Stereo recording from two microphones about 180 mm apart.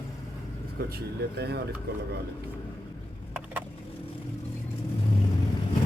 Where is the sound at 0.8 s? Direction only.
60° right (ahead or behind).